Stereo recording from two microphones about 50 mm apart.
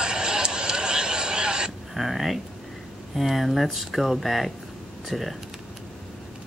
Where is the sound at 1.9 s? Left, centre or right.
Centre.